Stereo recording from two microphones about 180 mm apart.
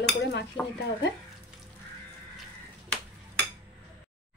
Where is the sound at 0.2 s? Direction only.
70° left (ahead or behind).